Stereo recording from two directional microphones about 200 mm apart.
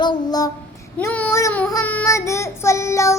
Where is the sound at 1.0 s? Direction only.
10° left (ahead or behind).